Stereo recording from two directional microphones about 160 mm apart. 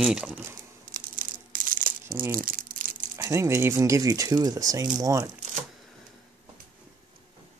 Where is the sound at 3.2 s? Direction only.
15° right (ahead or behind).